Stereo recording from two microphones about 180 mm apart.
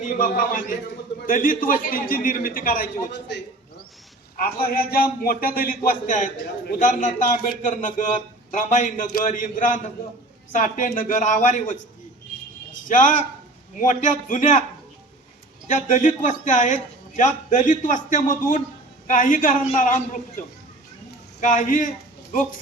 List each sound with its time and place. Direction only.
0.0 s a man's voice: 50° left (ahead or behind)
3.1 s a man's voice: 80° left
4.4 s a man's voice: 55° left (ahead or behind)
12.9 s a man's voice: 45° left (ahead or behind)
15.6 s a man's voice: 45° left (ahead or behind)
21.4 s a man's voice: 45° left (ahead or behind)